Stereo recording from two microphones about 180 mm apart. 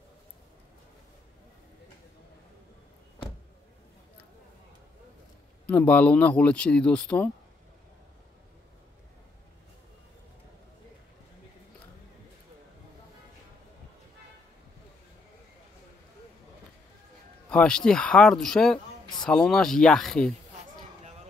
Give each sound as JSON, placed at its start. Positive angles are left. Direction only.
{"t": 5.7, "sound": "speech", "side_deg": 10}
{"t": 17.5, "sound": "speech", "side_deg": 5}